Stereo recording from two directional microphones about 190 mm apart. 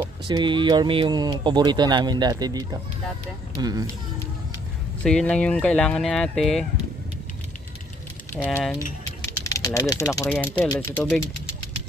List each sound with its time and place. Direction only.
0.0 s speech: 25° right (ahead or behind)
3.5 s speech: 20° right (ahead or behind)
5.0 s speech: 5° left (ahead or behind)
8.4 s speech: 5° left (ahead or behind)
9.4 s speech: 15° left (ahead or behind)